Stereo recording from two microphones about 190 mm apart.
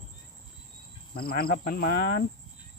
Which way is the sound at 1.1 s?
50° left (ahead or behind).